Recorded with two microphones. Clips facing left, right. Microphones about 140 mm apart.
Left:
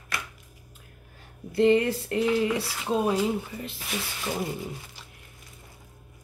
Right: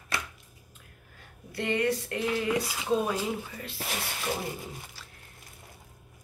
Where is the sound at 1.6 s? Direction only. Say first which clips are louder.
Left 7 dB; 30° left (ahead or behind).